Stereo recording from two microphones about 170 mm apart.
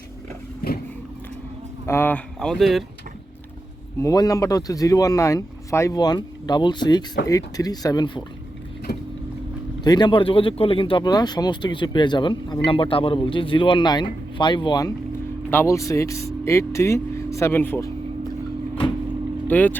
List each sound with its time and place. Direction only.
0.6 s vehicle: 65° left (ahead or behind)
1.9 s speech: 10° left (ahead or behind)
4.0 s speech: 20° left (ahead or behind)
9.8 s speech: 25° left (ahead or behind)
19.5 s speech: 10° left (ahead or behind)